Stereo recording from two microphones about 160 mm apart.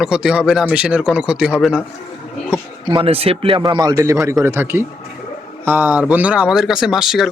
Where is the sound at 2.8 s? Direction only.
30° right (ahead or behind); by 7.2 s centre (ahead or behind).